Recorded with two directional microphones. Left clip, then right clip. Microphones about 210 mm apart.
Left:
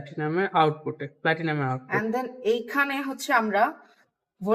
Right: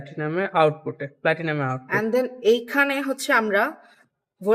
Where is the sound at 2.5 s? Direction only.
60° right (ahead or behind).